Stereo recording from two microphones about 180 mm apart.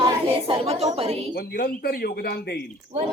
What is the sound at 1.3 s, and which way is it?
Speech, 55° left (ahead or behind).